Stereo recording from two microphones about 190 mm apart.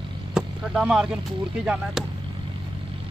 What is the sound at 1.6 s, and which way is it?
Speech, 5° right (ahead or behind).